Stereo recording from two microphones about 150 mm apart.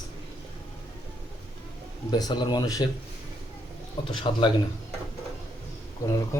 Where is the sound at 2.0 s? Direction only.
30° left (ahead or behind).